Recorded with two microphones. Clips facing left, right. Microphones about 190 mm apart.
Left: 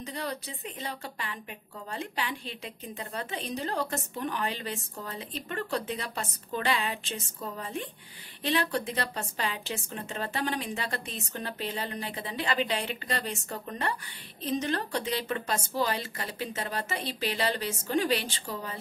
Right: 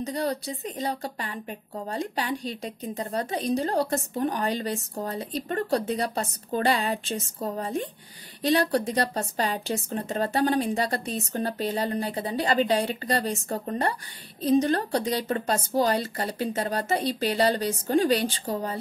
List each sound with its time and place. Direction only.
0.0 s a woman's voice: 35° right (ahead or behind)